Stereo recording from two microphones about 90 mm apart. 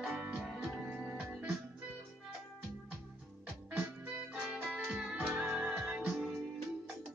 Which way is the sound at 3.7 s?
10° right (ahead or behind).